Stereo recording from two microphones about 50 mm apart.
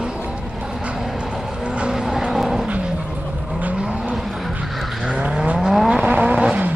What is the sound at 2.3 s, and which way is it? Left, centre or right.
Vehicle, centre.